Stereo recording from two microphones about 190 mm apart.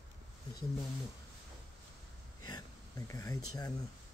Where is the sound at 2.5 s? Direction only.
20° left (ahead or behind).